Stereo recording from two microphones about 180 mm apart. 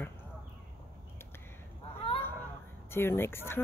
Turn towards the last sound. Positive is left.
turn(degrees=15)  # may be behind; listen again after turning